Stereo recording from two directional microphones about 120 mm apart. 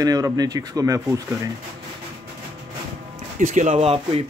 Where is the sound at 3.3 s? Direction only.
90° right.